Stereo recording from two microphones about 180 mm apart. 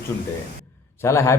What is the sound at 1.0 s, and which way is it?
Speech, 15° left (ahead or behind).